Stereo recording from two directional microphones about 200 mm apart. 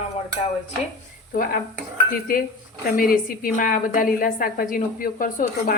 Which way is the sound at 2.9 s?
45° left (ahead or behind).